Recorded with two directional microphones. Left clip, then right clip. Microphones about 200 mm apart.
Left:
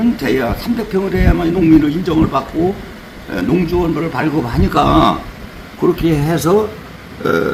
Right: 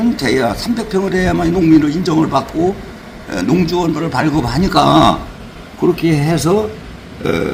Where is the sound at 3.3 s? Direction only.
30° right (ahead or behind).